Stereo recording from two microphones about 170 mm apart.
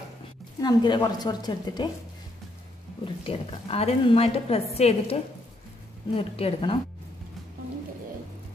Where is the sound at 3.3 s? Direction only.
35° left (ahead or behind).